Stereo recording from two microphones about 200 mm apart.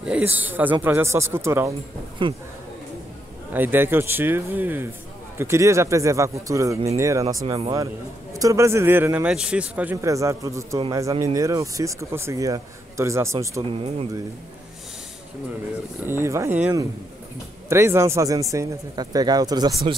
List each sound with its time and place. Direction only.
0.0 s a man's voice: 5° right (ahead or behind)
2.2 s speech: 25° right (ahead or behind)
3.5 s a man's voice: 10° right (ahead or behind); by 7.7 s 25° right (ahead or behind)
7.7 s a man's voice: 15° right (ahead or behind)
13.7 s speech: 30° right (ahead or behind)
16.1 s a man's voice: 15° right (ahead or behind)